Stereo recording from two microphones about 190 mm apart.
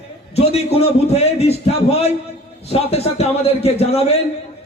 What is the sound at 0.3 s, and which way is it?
A man's voice, 30° left (ahead or behind).